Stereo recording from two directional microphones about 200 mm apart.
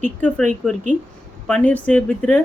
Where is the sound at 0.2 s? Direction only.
5° left (ahead or behind).